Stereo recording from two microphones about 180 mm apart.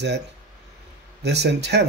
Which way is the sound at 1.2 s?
70° right (ahead or behind).